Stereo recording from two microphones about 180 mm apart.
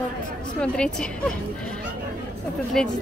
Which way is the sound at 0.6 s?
5° left (ahead or behind).